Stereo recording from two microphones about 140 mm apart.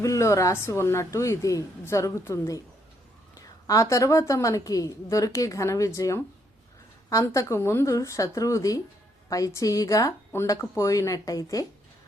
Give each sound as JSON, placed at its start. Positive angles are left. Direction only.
{"t": 0.0, "sound": "a woman's voice", "side_deg": 20}
{"t": 3.7, "sound": "a woman's voice", "side_deg": 25}